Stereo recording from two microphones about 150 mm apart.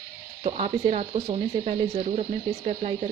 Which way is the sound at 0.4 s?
40° right (ahead or behind).